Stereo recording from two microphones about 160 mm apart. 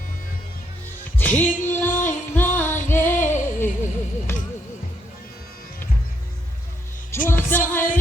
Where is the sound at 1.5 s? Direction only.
55° left (ahead or behind).